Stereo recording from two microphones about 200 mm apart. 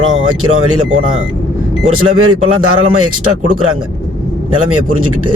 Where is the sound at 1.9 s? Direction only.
90° right.